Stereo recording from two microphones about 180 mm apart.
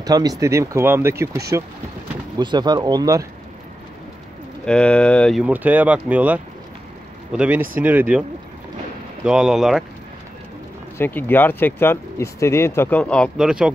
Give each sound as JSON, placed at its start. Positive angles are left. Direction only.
{"t": 0.0, "sound": "speech", "side_deg": -20}
{"t": 4.6, "sound": "speech", "side_deg": 5}
{"t": 5.4, "sound": "speech", "side_deg": -10}
{"t": 9.2, "sound": "speech", "side_deg": -5}
{"t": 11.0, "sound": "speech", "side_deg": 10}